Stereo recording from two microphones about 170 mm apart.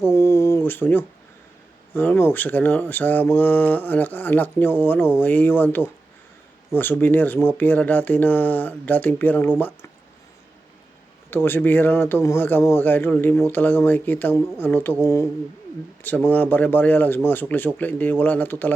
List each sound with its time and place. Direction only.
0.0 s a sound: 15° left (ahead or behind)
1.9 s speech: 10° left (ahead or behind)
11.3 s speech: 15° left (ahead or behind)